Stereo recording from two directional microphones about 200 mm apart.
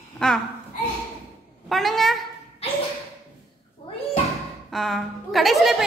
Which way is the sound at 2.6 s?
30° left (ahead or behind).